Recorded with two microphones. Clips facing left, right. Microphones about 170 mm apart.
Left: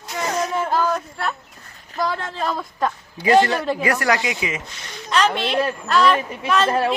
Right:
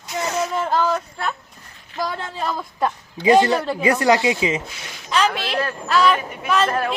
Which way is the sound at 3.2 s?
20° right (ahead or behind).